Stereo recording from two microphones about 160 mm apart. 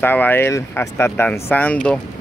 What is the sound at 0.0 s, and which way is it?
Speech, 10° left (ahead or behind).